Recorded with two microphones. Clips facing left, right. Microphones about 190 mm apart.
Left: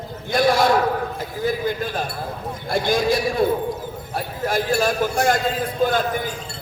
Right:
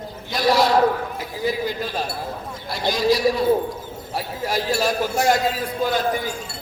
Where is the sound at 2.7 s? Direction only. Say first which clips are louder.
Left 1 dB; 50° left (ahead or behind).